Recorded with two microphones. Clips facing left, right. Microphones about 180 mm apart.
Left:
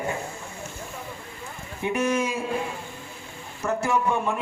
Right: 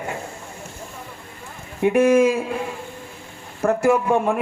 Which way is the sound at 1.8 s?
55° right (ahead or behind).